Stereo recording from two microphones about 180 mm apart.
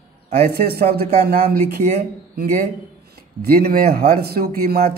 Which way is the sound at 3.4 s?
55° right (ahead or behind).